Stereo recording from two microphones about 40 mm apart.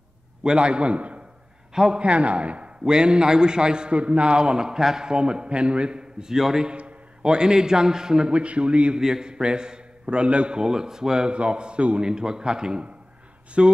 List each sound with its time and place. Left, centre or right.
0.4 s a man's voice: right
1.7 s a man's voice: centre
2.0 s a man's voice: right
2.8 s a man's voice: centre
8.3 s a man's voice: right
8.9 s a man's voice: centre
10.6 s a man's voice: centre
11.3 s a man's voice: right
12.1 s a man's voice: centre